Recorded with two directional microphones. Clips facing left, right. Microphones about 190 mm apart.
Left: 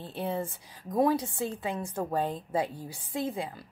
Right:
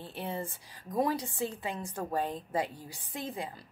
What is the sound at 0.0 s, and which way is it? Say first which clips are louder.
Speech: left 5 dB; 15° left (ahead or behind).